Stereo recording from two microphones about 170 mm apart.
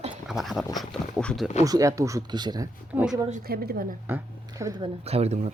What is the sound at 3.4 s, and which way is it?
Speech, 65° right (ahead or behind).